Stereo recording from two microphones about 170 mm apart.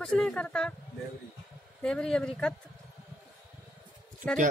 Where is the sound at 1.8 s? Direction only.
5° left (ahead or behind).